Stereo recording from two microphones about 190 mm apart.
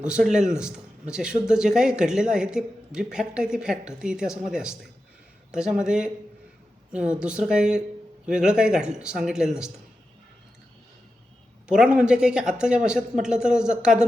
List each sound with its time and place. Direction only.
0.0 s speech: 5° right (ahead or behind)
11.7 s speech: 5° right (ahead or behind)